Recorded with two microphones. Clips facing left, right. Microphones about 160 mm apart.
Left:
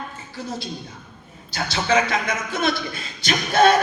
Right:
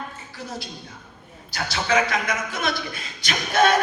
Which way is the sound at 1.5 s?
25° left (ahead or behind).